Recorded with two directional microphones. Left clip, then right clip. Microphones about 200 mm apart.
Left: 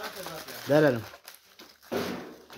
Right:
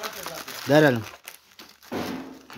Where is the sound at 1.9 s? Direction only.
50° left (ahead or behind).